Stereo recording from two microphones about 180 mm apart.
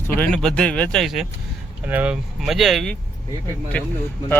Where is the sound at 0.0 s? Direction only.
5° left (ahead or behind).